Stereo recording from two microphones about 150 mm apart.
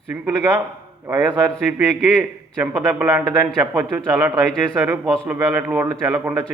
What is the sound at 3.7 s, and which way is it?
A man's voice, 20° right (ahead or behind).